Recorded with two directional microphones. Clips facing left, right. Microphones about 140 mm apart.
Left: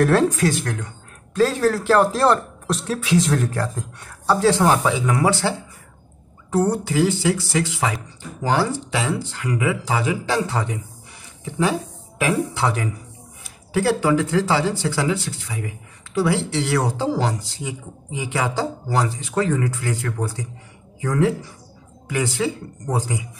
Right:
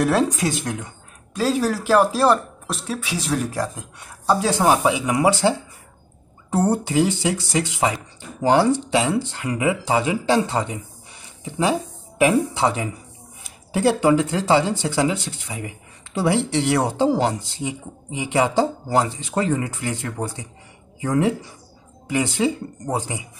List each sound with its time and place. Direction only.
0.0 s speech: 15° right (ahead or behind)
6.5 s speech: 25° right (ahead or behind)